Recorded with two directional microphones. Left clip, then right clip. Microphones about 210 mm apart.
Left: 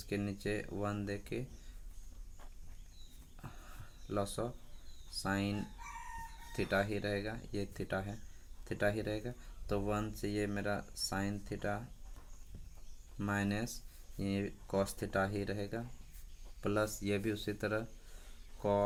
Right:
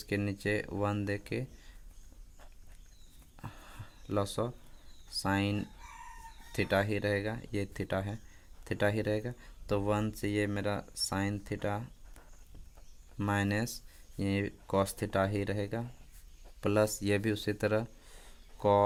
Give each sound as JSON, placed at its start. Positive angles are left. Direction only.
{"t": 0.0, "sound": "speech", "side_deg": -55}
{"t": 3.4, "sound": "a sound", "side_deg": -55}
{"t": 5.1, "sound": "speech", "side_deg": -50}
{"t": 13.1, "sound": "speech", "side_deg": -50}